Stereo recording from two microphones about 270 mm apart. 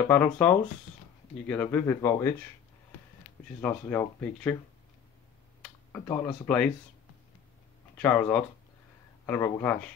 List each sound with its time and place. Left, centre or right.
0.0 s speech: centre
3.6 s speech: centre
5.6 s speech: centre
8.0 s speech: centre